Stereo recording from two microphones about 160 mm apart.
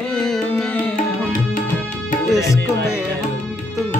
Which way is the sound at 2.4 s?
20° left (ahead or behind).